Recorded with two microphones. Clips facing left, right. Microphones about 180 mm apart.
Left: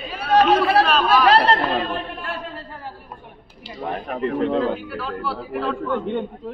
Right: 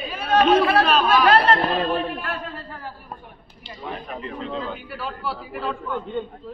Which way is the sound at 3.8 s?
60° left (ahead or behind).